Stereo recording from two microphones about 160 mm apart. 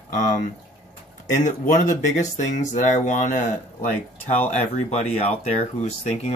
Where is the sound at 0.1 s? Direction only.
55° left (ahead or behind).